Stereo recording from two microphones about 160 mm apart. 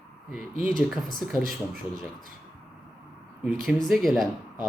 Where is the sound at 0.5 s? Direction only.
60° right (ahead or behind).